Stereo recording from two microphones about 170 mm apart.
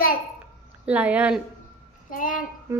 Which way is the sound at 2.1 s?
55° left (ahead or behind).